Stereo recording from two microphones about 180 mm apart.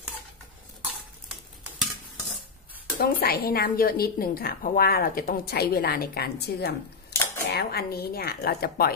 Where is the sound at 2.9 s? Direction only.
60° left (ahead or behind).